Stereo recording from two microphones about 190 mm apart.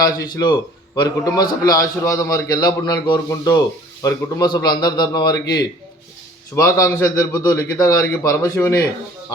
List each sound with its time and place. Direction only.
0.0 s a man's voice: 20° left (ahead or behind)